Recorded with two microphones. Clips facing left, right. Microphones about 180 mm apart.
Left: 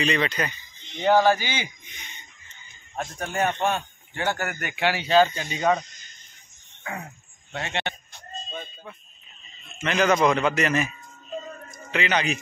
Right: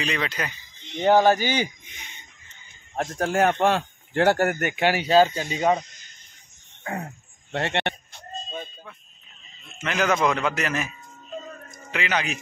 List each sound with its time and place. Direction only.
0.0 s a man's voice: 5° right (ahead or behind)
1.0 s speech: 45° right (ahead or behind)
3.0 s speech: 90° right
4.4 s speech: 45° right (ahead or behind)
5.6 s speech: 10° right (ahead or behind)
6.8 s a sound: 45° right (ahead or behind)
7.5 s speech: 65° right (ahead or behind)
9.8 s a man's voice: 5° right (ahead or behind)
11.9 s a man's voice: 5° right (ahead or behind)